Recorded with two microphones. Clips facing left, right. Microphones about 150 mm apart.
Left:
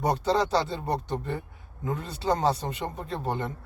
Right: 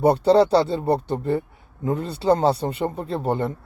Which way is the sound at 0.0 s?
35° right (ahead or behind).